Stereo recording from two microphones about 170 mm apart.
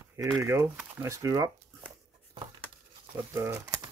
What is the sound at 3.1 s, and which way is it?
Speech, 15° right (ahead or behind).